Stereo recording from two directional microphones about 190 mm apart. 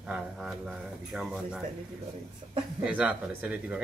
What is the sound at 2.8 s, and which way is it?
Speech, 5° right (ahead or behind).